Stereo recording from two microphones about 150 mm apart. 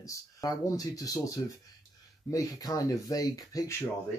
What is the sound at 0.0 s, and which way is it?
Speech, 25° left (ahead or behind).